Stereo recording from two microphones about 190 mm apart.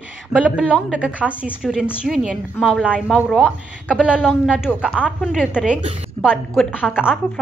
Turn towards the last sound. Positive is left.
turn(degrees=-5)  # may be behind; listen again after turning